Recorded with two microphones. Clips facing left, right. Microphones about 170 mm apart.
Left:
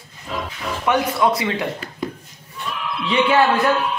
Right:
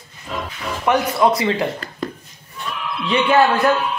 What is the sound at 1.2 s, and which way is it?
Speech, 35° right (ahead or behind).